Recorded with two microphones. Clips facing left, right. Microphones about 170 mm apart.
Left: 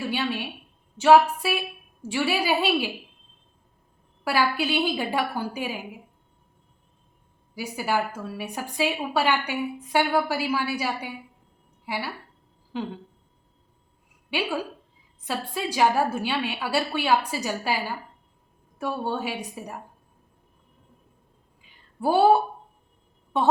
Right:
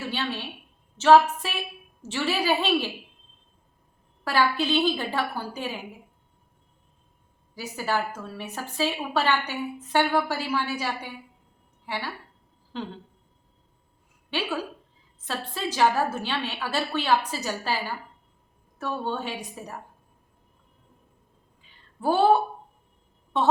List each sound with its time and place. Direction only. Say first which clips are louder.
0.0 s a woman's voice: left 3 dB; 10° left (ahead or behind)
4.2 s a woman's voice: even; 10° left (ahead or behind)
7.5 s a woman's voice: left 2 dB; 10° left (ahead or behind)
14.3 s a woman's voice: left 1 dB; 10° left (ahead or behind)
21.6 s a sound: left 2 dB; 10° left (ahead or behind)
23.3 s a woman's voice: left 1 dB; 10° left (ahead or behind)